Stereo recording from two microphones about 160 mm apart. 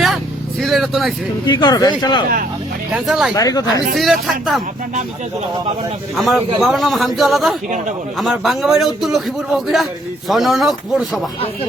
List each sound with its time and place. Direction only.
0.6 s a man's voice: centre (ahead or behind)
1.5 s speech: 25° left (ahead or behind)
2.9 s a man's voice: 5° right (ahead or behind)
3.3 s speech: 20° left (ahead or behind)
3.9 s a man's voice: centre (ahead or behind)
6.1 s a man's voice: centre (ahead or behind)